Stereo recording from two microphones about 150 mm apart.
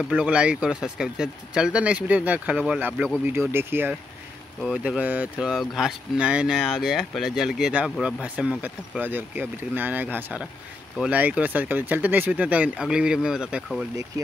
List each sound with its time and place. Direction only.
0.1 s speech: 5° right (ahead or behind)